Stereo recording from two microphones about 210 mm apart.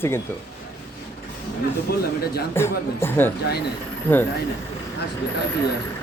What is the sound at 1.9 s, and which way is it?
Speech, 50° left (ahead or behind).